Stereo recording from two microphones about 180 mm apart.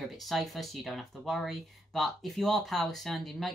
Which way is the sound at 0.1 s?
Centre (ahead or behind).